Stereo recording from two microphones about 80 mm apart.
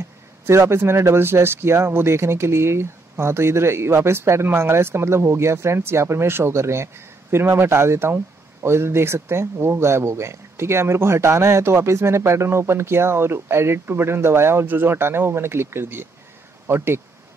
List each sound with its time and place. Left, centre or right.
0.5 s speech: right